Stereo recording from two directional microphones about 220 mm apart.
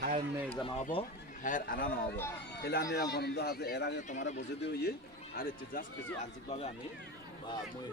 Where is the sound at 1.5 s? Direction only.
40° left (ahead or behind).